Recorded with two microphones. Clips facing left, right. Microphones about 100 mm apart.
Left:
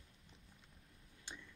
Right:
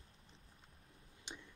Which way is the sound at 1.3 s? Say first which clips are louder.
Right 1 dB; 20° right (ahead or behind).